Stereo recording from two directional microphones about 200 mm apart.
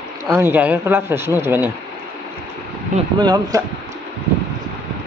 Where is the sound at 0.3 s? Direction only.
10° right (ahead or behind).